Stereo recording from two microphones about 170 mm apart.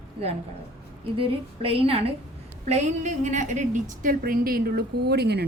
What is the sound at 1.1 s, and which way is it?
A woman's voice, 30° right (ahead or behind).